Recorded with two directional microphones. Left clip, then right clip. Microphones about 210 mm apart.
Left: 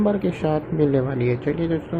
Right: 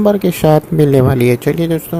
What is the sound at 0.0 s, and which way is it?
Speech, 50° right (ahead or behind).